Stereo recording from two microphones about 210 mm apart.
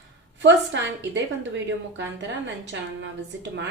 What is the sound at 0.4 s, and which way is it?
A woman's voice, 55° right (ahead or behind).